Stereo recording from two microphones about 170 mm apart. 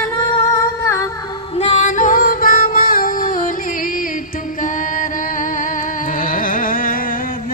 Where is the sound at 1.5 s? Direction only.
40° left (ahead or behind).